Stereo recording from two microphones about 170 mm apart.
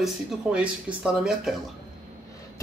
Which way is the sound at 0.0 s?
5° right (ahead or behind).